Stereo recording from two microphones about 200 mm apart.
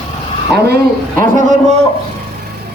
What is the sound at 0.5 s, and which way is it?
Speech, 55° right (ahead or behind).